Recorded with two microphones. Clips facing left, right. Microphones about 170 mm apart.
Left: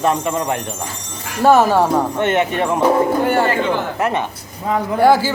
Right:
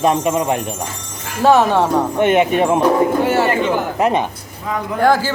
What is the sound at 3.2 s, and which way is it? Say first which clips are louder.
Speech: even; 5° right (ahead or behind).